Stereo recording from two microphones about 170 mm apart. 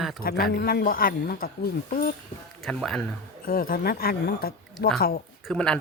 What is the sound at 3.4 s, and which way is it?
A woman's voice, 60° left (ahead or behind).